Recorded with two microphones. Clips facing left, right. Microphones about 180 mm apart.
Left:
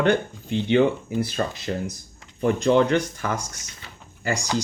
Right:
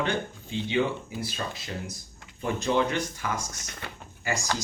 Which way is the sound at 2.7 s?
60° left (ahead or behind).